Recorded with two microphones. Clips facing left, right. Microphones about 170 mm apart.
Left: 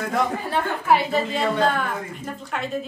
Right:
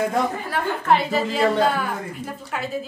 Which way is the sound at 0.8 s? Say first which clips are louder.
Right 1 dB; centre (ahead or behind).